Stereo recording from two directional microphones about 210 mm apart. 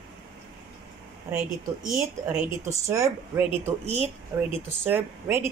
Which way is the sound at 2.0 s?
10° right (ahead or behind).